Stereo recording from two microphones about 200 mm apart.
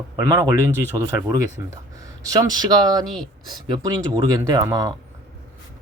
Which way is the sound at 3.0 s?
Centre (ahead or behind).